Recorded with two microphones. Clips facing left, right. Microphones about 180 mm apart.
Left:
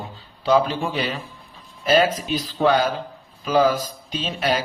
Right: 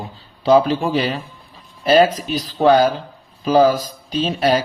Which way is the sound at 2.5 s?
40° right (ahead or behind).